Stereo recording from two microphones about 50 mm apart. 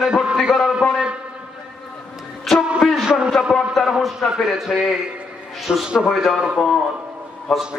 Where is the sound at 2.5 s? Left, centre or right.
Centre.